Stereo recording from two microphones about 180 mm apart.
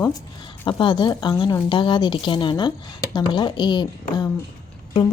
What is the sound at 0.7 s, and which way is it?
A woman's voice, 25° left (ahead or behind).